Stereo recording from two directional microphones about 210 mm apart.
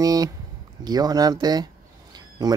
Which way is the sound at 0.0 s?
15° right (ahead or behind).